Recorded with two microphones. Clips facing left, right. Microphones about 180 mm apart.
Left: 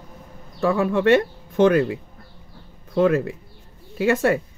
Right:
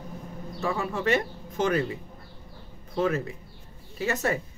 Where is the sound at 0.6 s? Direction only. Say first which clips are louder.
Left 9 dB; 60° left (ahead or behind).